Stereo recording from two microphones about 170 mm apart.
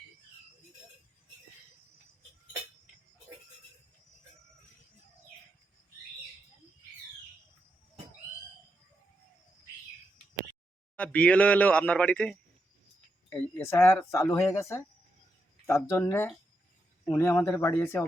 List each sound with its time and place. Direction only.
10.9 s speech: 10° left (ahead or behind)
13.6 s speech: 15° left (ahead or behind)